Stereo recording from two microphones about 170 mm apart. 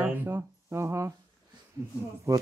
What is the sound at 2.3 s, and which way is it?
Speech, 15° right (ahead or behind).